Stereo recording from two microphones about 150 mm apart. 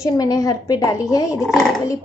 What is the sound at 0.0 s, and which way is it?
A woman's voice, 25° left (ahead or behind).